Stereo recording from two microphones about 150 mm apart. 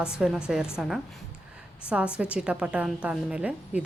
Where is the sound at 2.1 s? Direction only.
5° right (ahead or behind).